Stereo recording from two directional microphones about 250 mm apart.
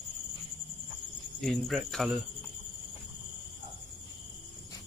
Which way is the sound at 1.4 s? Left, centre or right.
Centre.